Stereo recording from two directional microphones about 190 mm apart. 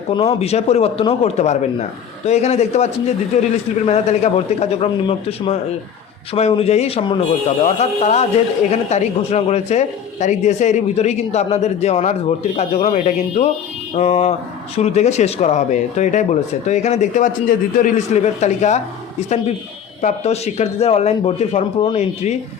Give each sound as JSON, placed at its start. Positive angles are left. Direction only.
{"t": 0.1, "sound": "a man's voice", "side_deg": 30}